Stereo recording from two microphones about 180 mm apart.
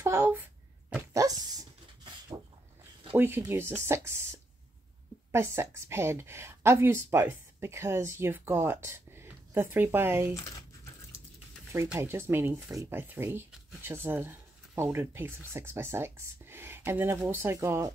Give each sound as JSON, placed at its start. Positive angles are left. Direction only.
{"t": 0.0, "sound": "a sound", "side_deg": -15}
{"t": 3.1, "sound": "speech", "side_deg": -10}
{"t": 11.7, "sound": "speech", "side_deg": -15}